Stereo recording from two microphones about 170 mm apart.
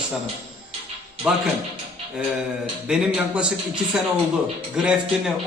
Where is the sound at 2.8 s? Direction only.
5° right (ahead or behind).